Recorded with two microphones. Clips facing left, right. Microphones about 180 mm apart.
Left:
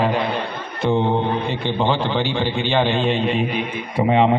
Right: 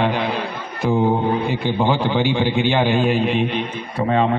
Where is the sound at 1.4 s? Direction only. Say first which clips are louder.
Right 1 dB; 10° right (ahead or behind).